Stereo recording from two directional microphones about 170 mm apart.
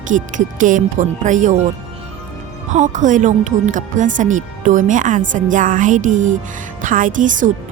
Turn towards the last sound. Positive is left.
turn(degrees=-50)  # may be behind; listen again after turning